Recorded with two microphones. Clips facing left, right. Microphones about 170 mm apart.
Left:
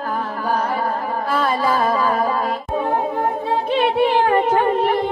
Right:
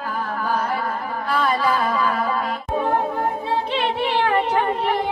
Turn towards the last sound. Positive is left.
turn(degrees=45)  # may be behind; listen again after turning